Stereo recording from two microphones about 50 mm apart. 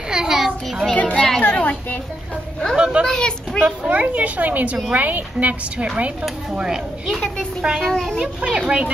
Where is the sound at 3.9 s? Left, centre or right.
Right.